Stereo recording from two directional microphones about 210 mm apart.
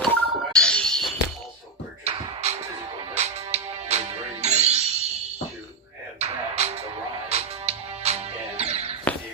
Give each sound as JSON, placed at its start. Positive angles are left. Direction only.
{"t": 0.0, "sound": "music", "side_deg": 5}
{"t": 2.0, "sound": "music", "side_deg": -30}
{"t": 6.1, "sound": "music", "side_deg": -30}